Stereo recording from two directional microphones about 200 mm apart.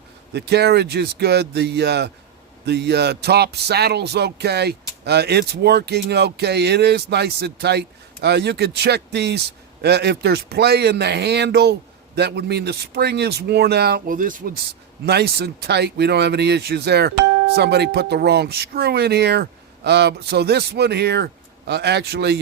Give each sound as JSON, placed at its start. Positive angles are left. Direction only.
{"t": 0.3, "sound": "speech", "side_deg": -55}
{"t": 15.0, "sound": "speech", "side_deg": -55}